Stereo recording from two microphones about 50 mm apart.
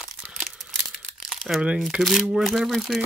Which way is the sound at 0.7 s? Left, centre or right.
Centre.